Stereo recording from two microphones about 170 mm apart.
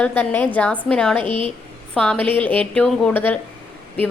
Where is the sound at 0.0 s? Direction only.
10° left (ahead or behind).